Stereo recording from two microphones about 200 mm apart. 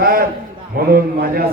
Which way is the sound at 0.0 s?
45° right (ahead or behind).